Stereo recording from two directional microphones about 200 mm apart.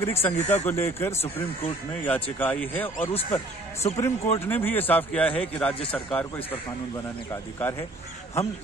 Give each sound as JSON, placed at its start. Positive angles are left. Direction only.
{"t": 0.0, "sound": "a man's voice", "side_deg": 10}
{"t": 3.0, "sound": "speech", "side_deg": 30}
{"t": 4.0, "sound": "a man's voice", "side_deg": 10}